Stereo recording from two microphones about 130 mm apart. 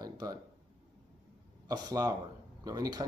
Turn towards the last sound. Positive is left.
turn(degrees=-30)  # may be behind; listen again after turning